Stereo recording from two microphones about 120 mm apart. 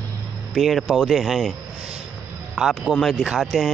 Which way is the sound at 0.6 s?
Centre (ahead or behind).